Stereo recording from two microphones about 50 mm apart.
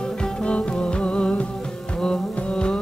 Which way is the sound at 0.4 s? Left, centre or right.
Left.